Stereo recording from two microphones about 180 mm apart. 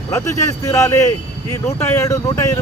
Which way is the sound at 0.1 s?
15° left (ahead or behind).